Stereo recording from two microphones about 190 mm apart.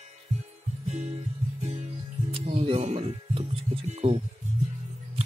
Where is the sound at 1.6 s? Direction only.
35° right (ahead or behind).